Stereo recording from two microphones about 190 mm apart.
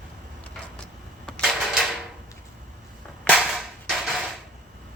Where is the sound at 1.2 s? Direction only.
Centre (ahead or behind).